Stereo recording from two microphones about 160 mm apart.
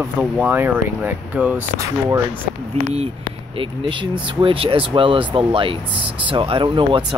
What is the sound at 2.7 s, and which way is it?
Speech, 40° right (ahead or behind).